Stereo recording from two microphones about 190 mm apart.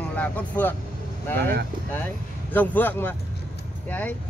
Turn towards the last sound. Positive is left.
turn(degrees=10)  # may be behind; listen again after turning